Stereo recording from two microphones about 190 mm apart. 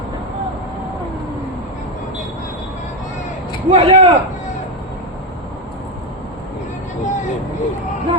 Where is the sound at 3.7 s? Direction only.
30° right (ahead or behind).